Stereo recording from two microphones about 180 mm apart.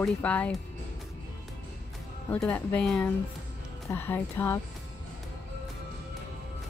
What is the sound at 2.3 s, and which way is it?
Speech, 10° left (ahead or behind).